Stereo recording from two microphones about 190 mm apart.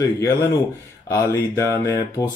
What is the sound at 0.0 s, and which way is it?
Speech, 15° left (ahead or behind).